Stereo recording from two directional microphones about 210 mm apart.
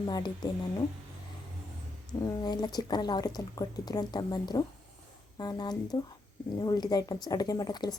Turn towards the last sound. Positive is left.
turn(degrees=20)  # may be behind; listen again after turning